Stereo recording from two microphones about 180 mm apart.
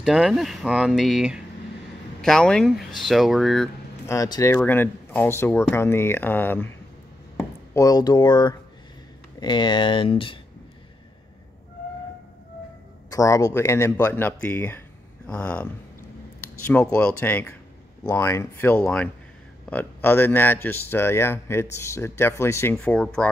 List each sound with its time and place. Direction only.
0.0 s speech: centre (ahead or behind)
4.1 s speech: 20° left (ahead or behind)
13.1 s speech: 20° left (ahead or behind)